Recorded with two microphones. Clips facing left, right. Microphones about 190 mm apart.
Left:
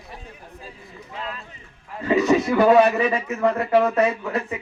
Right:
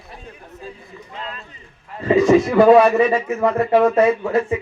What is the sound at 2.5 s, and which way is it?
Speech, 30° right (ahead or behind).